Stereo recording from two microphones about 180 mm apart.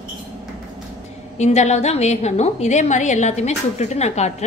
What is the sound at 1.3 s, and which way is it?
A woman's voice, 40° left (ahead or behind).